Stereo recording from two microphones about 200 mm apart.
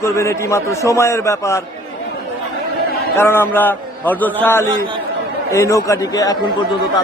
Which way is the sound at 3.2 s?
10° left (ahead or behind).